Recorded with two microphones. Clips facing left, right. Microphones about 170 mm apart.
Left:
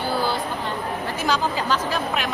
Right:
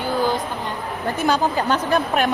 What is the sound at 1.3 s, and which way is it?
Speech, 55° right (ahead or behind).